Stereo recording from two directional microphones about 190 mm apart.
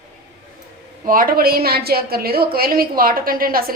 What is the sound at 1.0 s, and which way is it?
A woman's voice, 50° right (ahead or behind).